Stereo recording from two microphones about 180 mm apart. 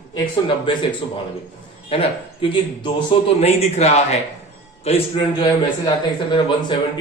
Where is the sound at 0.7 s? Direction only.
25° left (ahead or behind).